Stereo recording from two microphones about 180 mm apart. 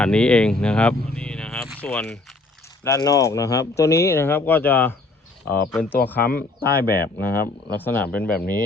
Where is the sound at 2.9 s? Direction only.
20° left (ahead or behind); by 5.9 s 5° left (ahead or behind).